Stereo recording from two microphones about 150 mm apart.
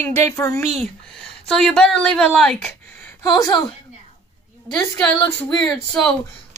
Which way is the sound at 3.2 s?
25° left (ahead or behind).